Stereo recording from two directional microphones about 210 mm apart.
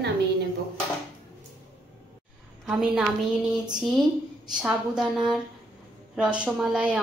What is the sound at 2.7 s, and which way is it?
A woman's voice, 5° right (ahead or behind).